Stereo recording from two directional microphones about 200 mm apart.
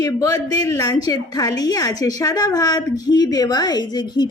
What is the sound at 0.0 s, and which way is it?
A woman's voice, 20° left (ahead or behind).